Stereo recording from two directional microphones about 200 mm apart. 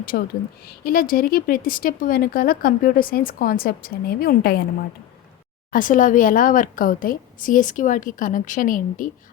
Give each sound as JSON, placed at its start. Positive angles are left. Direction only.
{"t": 0.0, "sound": "speech", "side_deg": 45}
{"t": 5.7, "sound": "a woman's voice", "side_deg": 40}